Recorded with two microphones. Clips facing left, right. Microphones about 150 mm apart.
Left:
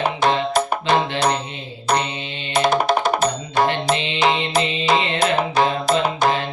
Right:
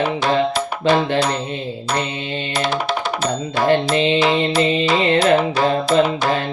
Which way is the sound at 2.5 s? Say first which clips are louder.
Left 5 dB; 45° left (ahead or behind).